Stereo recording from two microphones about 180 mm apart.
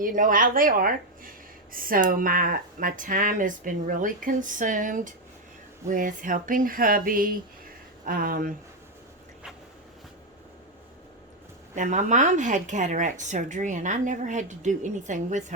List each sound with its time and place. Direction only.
0.0 s speech: 50° right (ahead or behind)
11.7 s speech: 45° right (ahead or behind)